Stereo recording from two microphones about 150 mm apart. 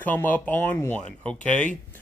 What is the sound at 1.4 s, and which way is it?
Speech, 55° left (ahead or behind).